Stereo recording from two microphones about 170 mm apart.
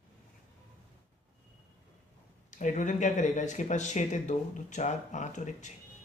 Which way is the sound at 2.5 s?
45° left (ahead or behind).